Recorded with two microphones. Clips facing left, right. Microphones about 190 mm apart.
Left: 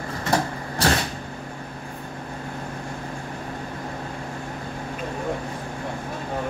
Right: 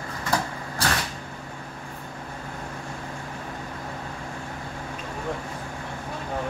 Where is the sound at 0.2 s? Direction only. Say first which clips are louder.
Left 3 dB; 25° left (ahead or behind).